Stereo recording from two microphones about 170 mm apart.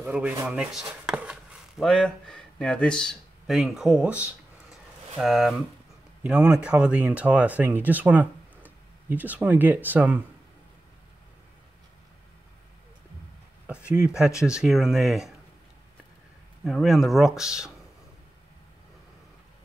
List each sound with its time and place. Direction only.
0.0 s speech: 10° right (ahead or behind)
14.1 s speech: 5° right (ahead or behind)
16.6 s speech: centre (ahead or behind)